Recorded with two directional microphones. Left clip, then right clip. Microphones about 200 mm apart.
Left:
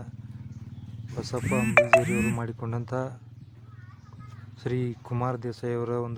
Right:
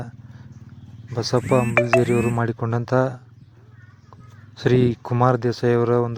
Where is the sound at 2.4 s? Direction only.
30° right (ahead or behind).